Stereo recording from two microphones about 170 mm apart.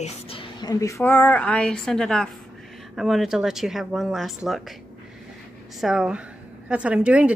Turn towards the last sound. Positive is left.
turn(degrees=-5)  # may be behind; listen again after turning